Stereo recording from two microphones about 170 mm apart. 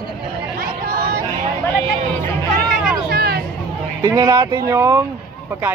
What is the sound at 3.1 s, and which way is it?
Hubbub, 65° right (ahead or behind).